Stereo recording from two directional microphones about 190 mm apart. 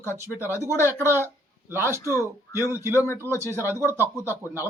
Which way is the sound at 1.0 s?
10° right (ahead or behind).